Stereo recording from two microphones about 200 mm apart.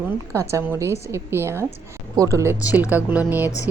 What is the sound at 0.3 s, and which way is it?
A woman's voice, 15° right (ahead or behind).